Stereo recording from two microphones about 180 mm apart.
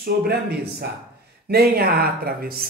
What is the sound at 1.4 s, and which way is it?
Speech, 60° right (ahead or behind).